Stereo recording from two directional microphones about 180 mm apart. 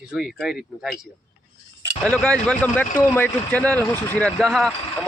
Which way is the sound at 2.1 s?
5° left (ahead or behind).